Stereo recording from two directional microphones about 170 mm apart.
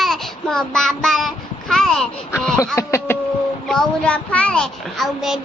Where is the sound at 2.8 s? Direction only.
15° left (ahead or behind).